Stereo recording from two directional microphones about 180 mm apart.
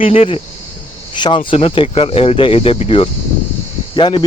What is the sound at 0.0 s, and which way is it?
Speech, 30° left (ahead or behind).